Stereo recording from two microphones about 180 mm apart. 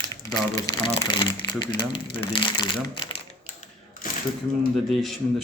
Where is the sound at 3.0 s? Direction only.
30° left (ahead or behind).